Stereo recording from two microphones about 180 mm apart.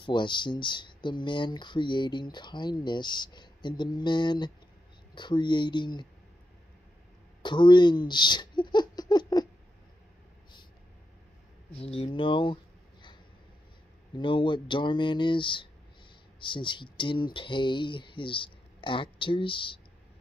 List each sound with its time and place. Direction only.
0.0 s speech: 25° left (ahead or behind)
7.4 s baby laughter: 25° left (ahead or behind)
11.8 s speech: 30° left (ahead or behind)
14.1 s speech: 25° left (ahead or behind)